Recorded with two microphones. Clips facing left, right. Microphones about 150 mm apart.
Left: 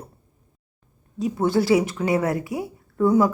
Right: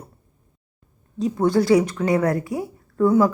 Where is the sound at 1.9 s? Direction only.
25° left (ahead or behind).